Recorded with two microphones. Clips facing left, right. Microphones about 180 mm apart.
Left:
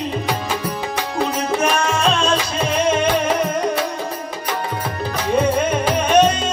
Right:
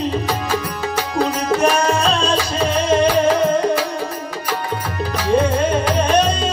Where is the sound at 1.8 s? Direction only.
35° right (ahead or behind).